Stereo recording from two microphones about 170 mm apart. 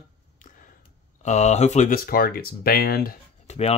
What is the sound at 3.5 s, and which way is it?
Speech, 40° left (ahead or behind).